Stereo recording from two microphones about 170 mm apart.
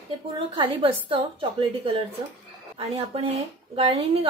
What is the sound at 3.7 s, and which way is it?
Speech, 35° right (ahead or behind).